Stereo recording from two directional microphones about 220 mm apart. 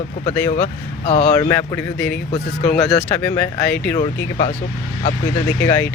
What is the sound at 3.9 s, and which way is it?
Speech, 35° left (ahead or behind).